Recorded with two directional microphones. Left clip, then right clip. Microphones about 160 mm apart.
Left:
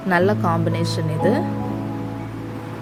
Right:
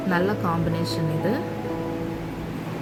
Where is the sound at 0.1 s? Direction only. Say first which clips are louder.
Left 6 dB; 45° left (ahead or behind).